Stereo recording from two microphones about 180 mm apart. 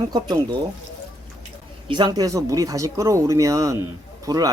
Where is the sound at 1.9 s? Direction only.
25° right (ahead or behind).